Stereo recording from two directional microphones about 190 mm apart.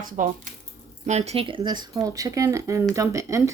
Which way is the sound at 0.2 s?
45° right (ahead or behind).